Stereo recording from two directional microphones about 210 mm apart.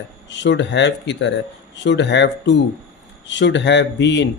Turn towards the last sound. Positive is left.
turn(degrees=60)  # may be behind; listen again after turning